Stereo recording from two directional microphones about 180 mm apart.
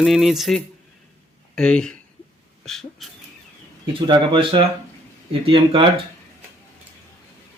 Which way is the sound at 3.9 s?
30° right (ahead or behind).